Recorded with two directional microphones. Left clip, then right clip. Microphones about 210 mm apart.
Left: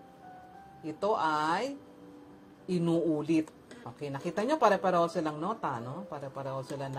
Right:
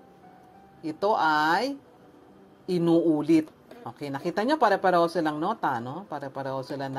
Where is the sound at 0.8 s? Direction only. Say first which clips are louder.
Right 6 dB; 15° right (ahead or behind).